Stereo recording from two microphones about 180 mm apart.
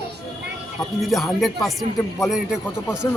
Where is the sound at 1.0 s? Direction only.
Centre (ahead or behind).